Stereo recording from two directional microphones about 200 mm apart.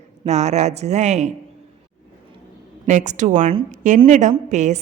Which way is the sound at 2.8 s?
35° right (ahead or behind).